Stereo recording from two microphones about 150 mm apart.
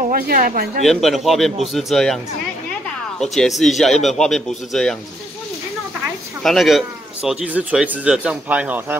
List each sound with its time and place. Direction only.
0.1 s speech: 75° right (ahead or behind)
0.8 s speech: centre (ahead or behind)
3.2 s speech: centre (ahead or behind)
6.4 s a man's voice: centre (ahead or behind)